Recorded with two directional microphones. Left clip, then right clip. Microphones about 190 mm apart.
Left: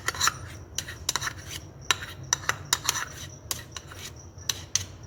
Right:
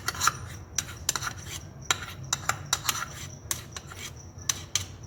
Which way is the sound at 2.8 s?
Centre (ahead or behind).